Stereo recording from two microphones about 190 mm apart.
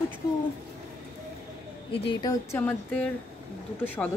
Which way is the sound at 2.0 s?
20° left (ahead or behind).